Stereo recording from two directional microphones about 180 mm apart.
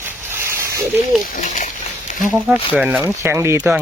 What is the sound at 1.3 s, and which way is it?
Speech, 45° left (ahead or behind).